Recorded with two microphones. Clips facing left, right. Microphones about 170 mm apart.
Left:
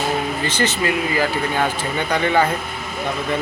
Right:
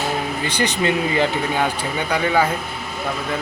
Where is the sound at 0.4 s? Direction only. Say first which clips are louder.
Right 3 dB; 15° right (ahead or behind).